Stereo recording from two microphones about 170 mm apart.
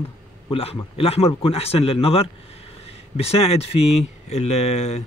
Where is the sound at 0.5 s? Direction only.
35° left (ahead or behind).